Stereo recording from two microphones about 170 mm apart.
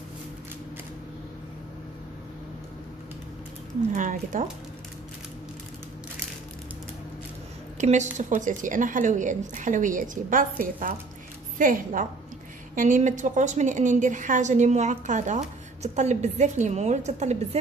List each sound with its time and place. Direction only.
3.9 s a woman's voice: 50° right (ahead or behind)
7.8 s a woman's voice: 45° right (ahead or behind)